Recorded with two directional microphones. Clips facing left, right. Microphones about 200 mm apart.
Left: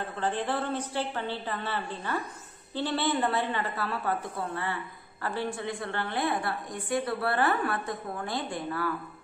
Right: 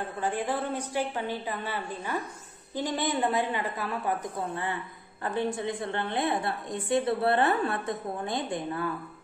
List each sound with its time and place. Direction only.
0.2 s a woman's voice: 10° right (ahead or behind)